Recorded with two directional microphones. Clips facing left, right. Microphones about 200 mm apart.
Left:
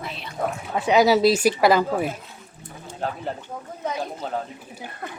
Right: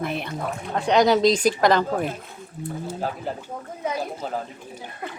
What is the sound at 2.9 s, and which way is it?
Speech, 5° right (ahead or behind).